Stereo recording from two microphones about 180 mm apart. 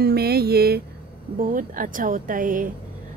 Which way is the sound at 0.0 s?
60° right (ahead or behind).